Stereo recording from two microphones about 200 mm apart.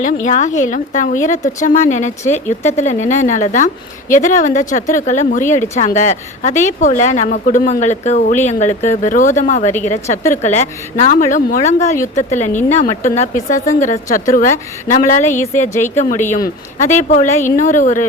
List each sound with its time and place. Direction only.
0.3 s a woman's voice: 35° left (ahead or behind)